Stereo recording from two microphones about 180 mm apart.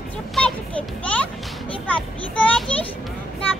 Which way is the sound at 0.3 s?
5° left (ahead or behind).